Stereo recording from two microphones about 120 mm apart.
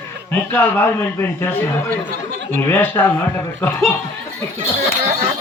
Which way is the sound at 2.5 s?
15° left (ahead or behind).